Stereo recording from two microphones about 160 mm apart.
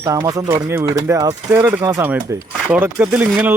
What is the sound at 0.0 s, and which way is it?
Speech, 20° right (ahead or behind).